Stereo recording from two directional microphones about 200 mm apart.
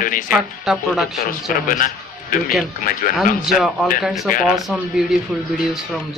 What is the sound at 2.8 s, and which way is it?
Speech, 45° left (ahead or behind).